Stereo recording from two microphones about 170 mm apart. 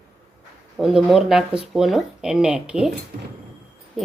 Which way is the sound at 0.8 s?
Centre (ahead or behind).